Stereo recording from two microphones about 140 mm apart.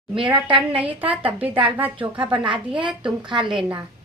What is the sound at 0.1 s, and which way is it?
Speech, 40° right (ahead or behind).